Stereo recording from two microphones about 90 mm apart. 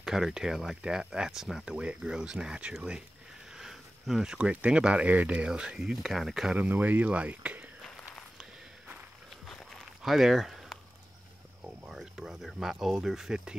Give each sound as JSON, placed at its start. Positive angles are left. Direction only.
{"t": 0.0, "sound": "speech", "side_deg": -5}
{"t": 8.4, "sound": "walk", "side_deg": -15}
{"t": 9.5, "sound": "walk", "side_deg": 0}
{"t": 11.9, "sound": "speech", "side_deg": -5}